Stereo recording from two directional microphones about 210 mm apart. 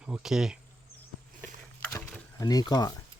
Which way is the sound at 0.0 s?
5° right (ahead or behind).